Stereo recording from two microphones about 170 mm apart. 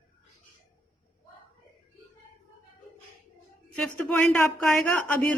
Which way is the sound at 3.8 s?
5° left (ahead or behind).